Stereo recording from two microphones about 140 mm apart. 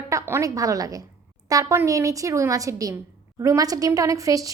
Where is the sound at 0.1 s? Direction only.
20° right (ahead or behind).